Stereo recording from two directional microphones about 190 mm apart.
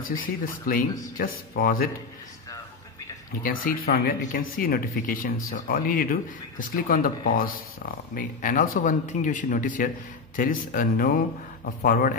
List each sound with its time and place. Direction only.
0.2 s speech: 45° left (ahead or behind)
3.6 s speech: 50° left (ahead or behind)